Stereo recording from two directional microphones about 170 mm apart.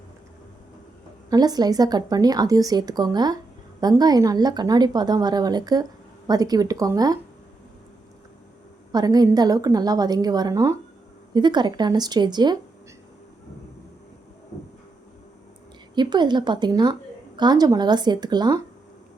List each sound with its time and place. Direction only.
1.3 s a woman's voice: 25° right (ahead or behind)
8.9 s a woman's voice: 25° right (ahead or behind)
16.0 s a woman's voice: 25° right (ahead or behind)